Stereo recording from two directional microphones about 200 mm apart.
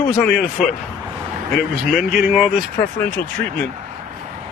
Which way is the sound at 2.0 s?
Centre (ahead or behind).